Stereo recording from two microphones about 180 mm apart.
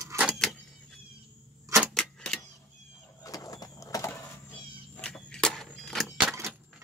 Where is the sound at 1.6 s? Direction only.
15° right (ahead or behind).